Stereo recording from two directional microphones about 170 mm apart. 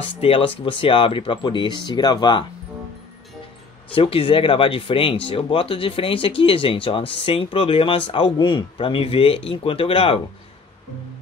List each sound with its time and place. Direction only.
0.2 s speech: 30° left (ahead or behind)
3.9 s speech: 30° left (ahead or behind)